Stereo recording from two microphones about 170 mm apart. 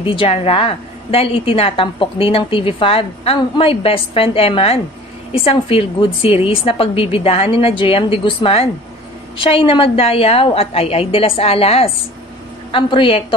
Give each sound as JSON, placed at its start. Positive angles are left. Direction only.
{"t": 0.0, "sound": "a woman's voice", "side_deg": 30}